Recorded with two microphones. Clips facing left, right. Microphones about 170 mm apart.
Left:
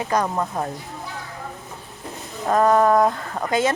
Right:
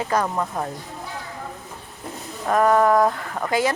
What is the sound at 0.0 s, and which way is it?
Speech, 15° left (ahead or behind).